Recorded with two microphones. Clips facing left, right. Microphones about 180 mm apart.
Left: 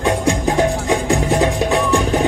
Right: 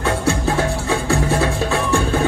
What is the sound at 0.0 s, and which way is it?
Music, 15° left (ahead or behind).